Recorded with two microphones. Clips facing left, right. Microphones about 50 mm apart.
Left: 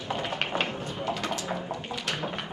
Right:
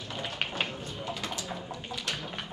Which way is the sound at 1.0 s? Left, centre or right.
Left.